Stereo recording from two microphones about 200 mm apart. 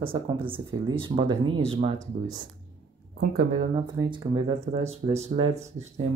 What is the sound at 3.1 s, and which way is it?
Speech, 50° right (ahead or behind).